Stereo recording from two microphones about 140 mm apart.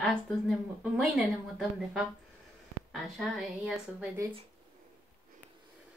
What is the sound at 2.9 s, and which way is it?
Speech, centre (ahead or behind).